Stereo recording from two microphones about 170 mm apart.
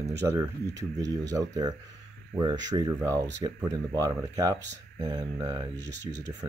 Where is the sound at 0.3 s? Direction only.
20° right (ahead or behind).